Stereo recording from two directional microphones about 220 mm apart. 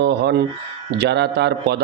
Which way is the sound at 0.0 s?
50° right (ahead or behind).